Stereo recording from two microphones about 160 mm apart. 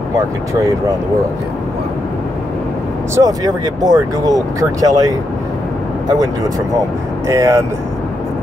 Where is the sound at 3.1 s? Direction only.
20° right (ahead or behind).